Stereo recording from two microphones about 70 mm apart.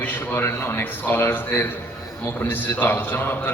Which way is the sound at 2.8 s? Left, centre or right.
Left.